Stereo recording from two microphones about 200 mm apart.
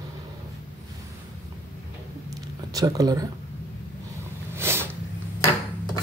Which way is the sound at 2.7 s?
20° right (ahead or behind).